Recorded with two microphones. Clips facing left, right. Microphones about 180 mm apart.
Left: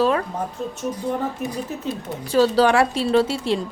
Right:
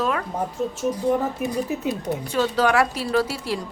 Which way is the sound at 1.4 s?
15° right (ahead or behind).